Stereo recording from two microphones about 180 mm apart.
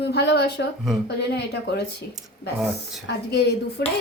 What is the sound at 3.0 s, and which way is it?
Speech, 70° left (ahead or behind).